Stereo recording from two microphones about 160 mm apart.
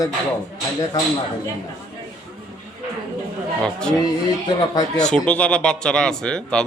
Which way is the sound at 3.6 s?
5° left (ahead or behind).